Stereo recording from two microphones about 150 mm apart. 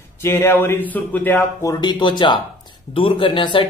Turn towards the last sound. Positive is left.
turn(degrees=35)  # may be behind; listen again after turning